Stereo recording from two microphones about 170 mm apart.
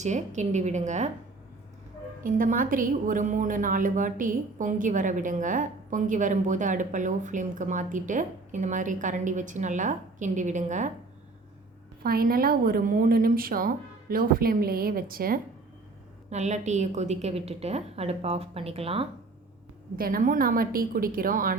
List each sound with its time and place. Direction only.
0.0 s a woman's voice: 45° right (ahead or behind)
2.2 s a woman's voice: 55° right (ahead or behind)
12.0 s a woman's voice: 60° right (ahead or behind)
16.3 s a woman's voice: 45° right (ahead or behind)
20.0 s a woman's voice: 55° right (ahead or behind)